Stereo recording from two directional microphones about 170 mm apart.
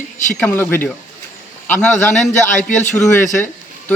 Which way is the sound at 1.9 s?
45° left (ahead or behind).